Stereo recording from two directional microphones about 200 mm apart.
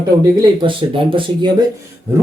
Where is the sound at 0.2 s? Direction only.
25° right (ahead or behind).